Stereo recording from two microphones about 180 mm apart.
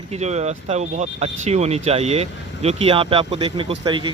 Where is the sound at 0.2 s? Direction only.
40° right (ahead or behind).